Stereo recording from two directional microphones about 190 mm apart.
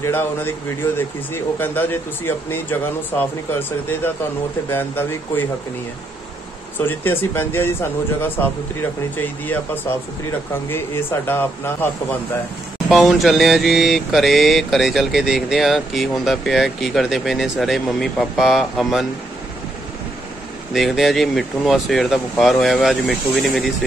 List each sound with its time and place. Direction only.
0.0 s speech: 10° left (ahead or behind)
6.8 s speech: 10° left (ahead or behind)
10.7 s speech: 10° left (ahead or behind)
12.9 s mantra: centre (ahead or behind)
20.7 s mantra: centre (ahead or behind)